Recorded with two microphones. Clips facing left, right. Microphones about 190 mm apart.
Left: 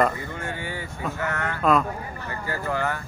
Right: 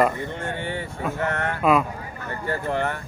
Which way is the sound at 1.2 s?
30° right (ahead or behind).